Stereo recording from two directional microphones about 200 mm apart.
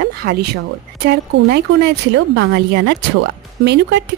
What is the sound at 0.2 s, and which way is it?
Speech, 55° right (ahead or behind).